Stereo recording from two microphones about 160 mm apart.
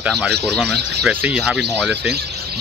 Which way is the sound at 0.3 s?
90° right.